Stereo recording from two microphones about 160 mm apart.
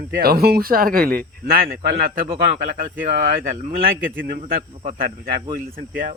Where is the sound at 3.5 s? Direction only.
55° right (ahead or behind).